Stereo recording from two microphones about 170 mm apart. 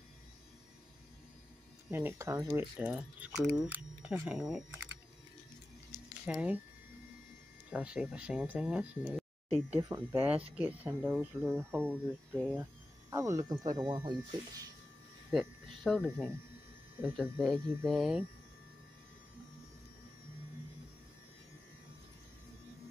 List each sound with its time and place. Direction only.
1.9 s speech: 15° right (ahead or behind)
6.2 s speech: 5° right (ahead or behind)
7.7 s speech: 5° right (ahead or behind)
9.8 s speech: 20° right (ahead or behind)
15.3 s speech: centre (ahead or behind)